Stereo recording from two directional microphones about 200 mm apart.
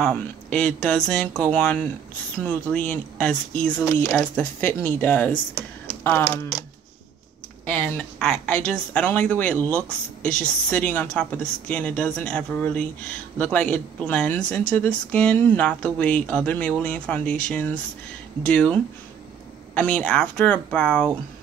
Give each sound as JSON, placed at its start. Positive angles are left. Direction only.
{"t": 0.0, "sound": "speech", "side_deg": 5}
{"t": 7.6, "sound": "speech", "side_deg": 5}